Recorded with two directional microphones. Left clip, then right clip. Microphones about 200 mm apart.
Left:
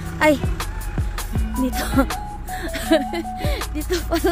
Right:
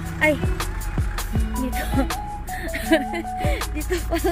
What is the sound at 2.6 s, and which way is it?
Music, 20° left (ahead or behind).